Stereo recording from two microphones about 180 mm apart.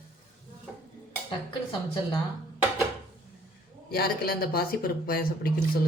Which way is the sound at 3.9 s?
60° left (ahead or behind).